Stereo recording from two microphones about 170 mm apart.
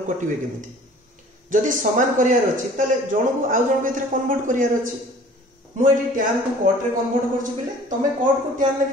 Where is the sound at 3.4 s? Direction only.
50° right (ahead or behind).